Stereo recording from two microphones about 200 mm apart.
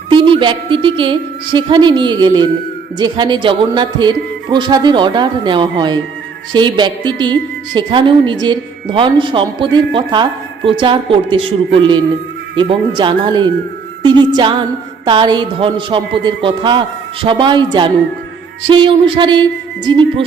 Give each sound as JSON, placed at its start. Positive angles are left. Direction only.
{"t": 0.1, "sound": "a woman's voice", "side_deg": -25}
{"t": 14.0, "sound": "music", "side_deg": -25}
{"t": 15.0, "sound": "a woman's voice", "side_deg": -20}